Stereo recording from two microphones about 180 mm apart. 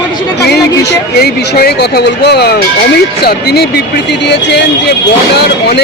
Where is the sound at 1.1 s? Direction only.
65° left (ahead or behind).